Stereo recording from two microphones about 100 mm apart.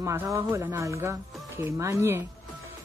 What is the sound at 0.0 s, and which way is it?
A woman's voice, 30° right (ahead or behind).